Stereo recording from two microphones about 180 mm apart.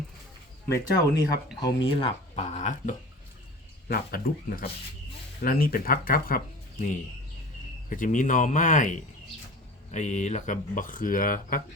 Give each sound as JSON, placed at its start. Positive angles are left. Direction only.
{"t": 0.7, "sound": "speech", "side_deg": 20}
{"t": 3.8, "sound": "speech", "side_deg": 55}
{"t": 9.9, "sound": "speech", "side_deg": 40}